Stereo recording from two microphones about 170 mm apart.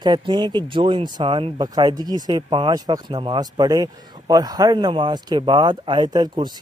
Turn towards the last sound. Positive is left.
turn(degrees=-25)  # may be behind; listen again after turning